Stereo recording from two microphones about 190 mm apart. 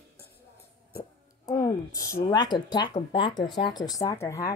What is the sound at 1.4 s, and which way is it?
Speech, 15° left (ahead or behind).